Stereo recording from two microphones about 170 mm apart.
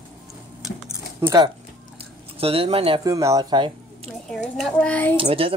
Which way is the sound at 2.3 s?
35° right (ahead or behind).